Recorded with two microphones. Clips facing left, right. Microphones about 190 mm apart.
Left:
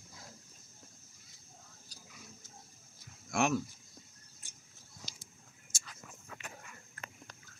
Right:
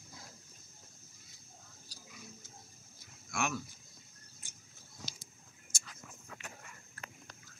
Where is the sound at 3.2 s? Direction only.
40° left (ahead or behind).